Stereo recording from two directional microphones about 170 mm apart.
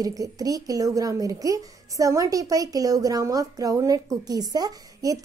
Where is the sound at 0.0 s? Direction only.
20° right (ahead or behind).